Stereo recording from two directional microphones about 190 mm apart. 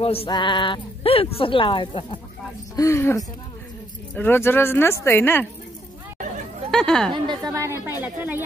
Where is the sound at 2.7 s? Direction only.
15° left (ahead or behind).